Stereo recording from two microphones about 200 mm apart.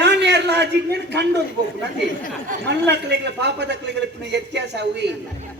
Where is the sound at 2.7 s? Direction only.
55° right (ahead or behind).